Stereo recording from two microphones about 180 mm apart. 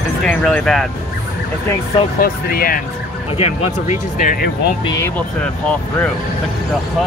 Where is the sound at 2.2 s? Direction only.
55° left (ahead or behind).